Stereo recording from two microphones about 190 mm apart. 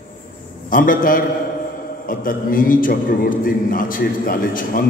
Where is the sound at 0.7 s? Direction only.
45° left (ahead or behind).